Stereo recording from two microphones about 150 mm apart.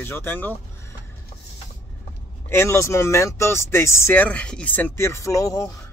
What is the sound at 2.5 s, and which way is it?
Speech, 20° left (ahead or behind).